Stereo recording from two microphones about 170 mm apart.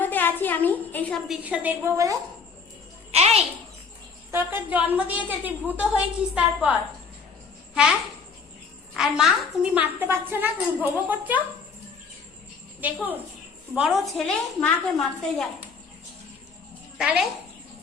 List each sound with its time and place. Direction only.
0.0 s a sound: 10° left (ahead or behind)
1.3 s a woman's voice: 5° right (ahead or behind)
3.1 s music: 40° right (ahead or behind)
4.3 s a woman's voice: 15° right (ahead or behind)
9.0 s a woman's voice: 5° right (ahead or behind)
12.8 s a woman's voice: 10° right (ahead or behind)
17.0 s a woman's voice: 5° right (ahead or behind)